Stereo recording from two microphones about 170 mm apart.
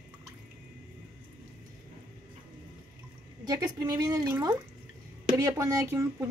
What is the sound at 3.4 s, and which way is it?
A woman's voice, 20° right (ahead or behind).